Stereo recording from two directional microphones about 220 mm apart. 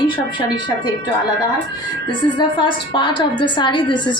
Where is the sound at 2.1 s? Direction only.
20° left (ahead or behind).